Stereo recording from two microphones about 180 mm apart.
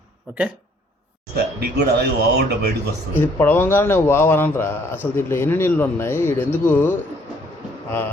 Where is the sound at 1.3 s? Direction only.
65° right (ahead or behind).